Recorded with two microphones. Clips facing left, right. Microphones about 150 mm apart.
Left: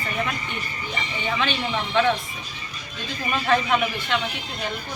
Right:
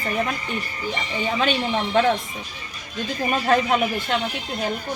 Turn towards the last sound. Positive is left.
turn(degrees=-40)  # may be behind; listen again after turning